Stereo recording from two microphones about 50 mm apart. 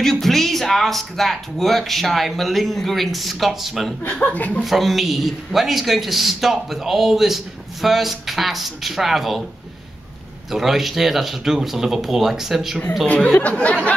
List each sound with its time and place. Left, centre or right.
0.0 s a man's voice: centre
4.1 s speech: left
4.6 s a man's voice: centre
10.5 s a man's voice: centre
13.0 s speech: left